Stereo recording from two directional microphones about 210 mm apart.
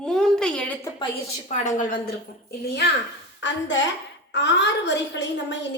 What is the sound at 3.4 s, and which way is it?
A woman's voice, 60° left (ahead or behind).